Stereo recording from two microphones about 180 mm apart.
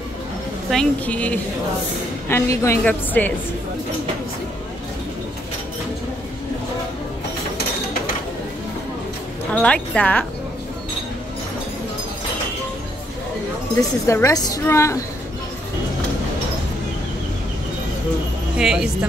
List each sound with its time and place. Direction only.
0.7 s a woman's voice: 5° left (ahead or behind)
9.5 s a woman's voice: 5° left (ahead or behind)
14.0 s a woman's voice: 15° left (ahead or behind)
18.6 s speech: 5° right (ahead or behind)